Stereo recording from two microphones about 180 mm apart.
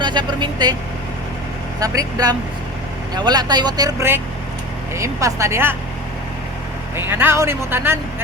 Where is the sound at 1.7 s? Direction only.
20° right (ahead or behind).